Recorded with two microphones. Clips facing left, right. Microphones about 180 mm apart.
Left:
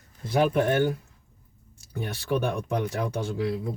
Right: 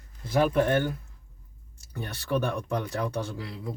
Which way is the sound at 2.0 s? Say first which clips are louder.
Left 2 dB; 15° left (ahead or behind).